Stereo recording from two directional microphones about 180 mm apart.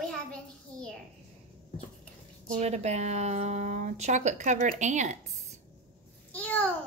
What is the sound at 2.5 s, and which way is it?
Speech, 40° right (ahead or behind).